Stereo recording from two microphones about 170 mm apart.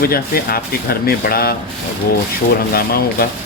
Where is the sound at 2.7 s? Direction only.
60° left (ahead or behind).